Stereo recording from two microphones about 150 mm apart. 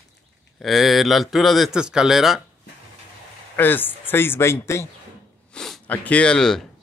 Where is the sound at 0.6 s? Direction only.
Centre (ahead or behind).